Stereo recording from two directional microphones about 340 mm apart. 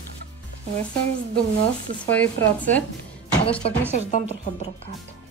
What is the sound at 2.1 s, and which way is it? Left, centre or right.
Speech, centre.